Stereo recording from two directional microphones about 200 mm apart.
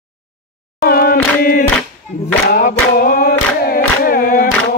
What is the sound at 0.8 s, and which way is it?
A capella, 50° left (ahead or behind).